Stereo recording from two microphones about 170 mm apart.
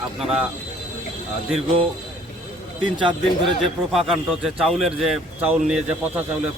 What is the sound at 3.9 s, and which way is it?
Speech, centre (ahead or behind).